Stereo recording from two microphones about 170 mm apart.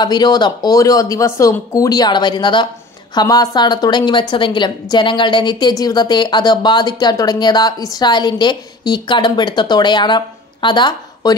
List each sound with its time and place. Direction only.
0.0 s speech: 25° left (ahead or behind)